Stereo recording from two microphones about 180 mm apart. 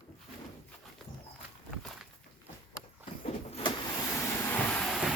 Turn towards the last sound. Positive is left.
turn(degrees=5)  # may be behind; listen again after turning